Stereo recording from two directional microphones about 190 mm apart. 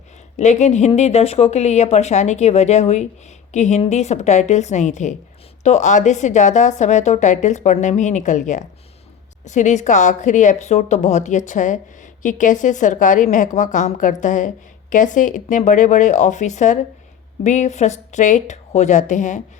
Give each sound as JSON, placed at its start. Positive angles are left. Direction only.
{"t": 0.3, "sound": "a woman's voice", "side_deg": 40}